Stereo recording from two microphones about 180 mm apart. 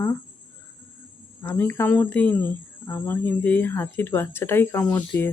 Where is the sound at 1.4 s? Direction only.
15° left (ahead or behind).